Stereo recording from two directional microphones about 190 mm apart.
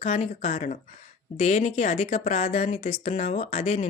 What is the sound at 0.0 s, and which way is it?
Speech, 40° left (ahead or behind).